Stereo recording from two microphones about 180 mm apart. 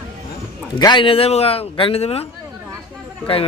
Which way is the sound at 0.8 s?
25° left (ahead or behind).